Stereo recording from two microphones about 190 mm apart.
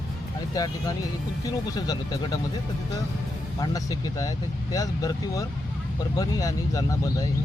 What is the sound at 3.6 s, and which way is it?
Speech, 20° left (ahead or behind).